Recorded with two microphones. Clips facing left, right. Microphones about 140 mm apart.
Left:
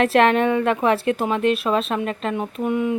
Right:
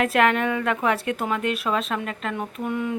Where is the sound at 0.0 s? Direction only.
30° left (ahead or behind).